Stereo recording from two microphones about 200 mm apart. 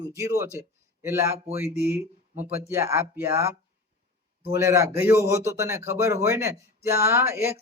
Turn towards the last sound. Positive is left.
turn(degrees=-15)  # may be behind; listen again after turning